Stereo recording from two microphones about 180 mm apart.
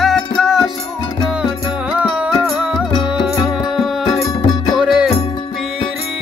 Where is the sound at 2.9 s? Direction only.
25° left (ahead or behind).